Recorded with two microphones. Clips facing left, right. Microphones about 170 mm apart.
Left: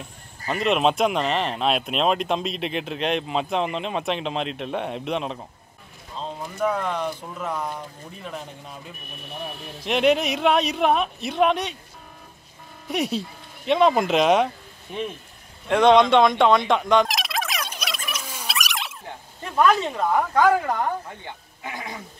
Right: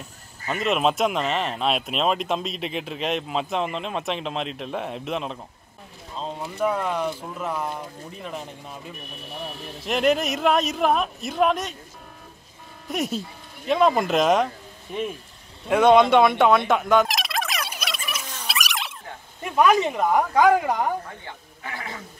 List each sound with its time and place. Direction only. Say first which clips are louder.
0.5 s speech: left 2 dB; centre (ahead or behind)
9.8 s speech: left 1 dB; centre (ahead or behind)
12.8 s speech: left 2 dB; centre (ahead or behind)
15.7 s turkey: even; 5° right (ahead or behind)
18.5 s a sound: even; centre (ahead or behind)
19.4 s speech: right 1 dB; 15° right (ahead or behind)
21.6 s speech: left 1 dB; 15° left (ahead or behind)